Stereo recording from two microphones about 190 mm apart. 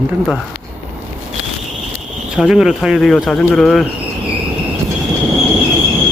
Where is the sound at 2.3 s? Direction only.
Centre (ahead or behind).